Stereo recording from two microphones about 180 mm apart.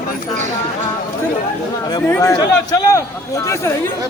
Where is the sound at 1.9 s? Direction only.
15° left (ahead or behind).